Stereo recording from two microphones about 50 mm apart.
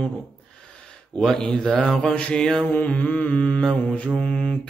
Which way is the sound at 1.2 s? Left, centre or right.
Centre.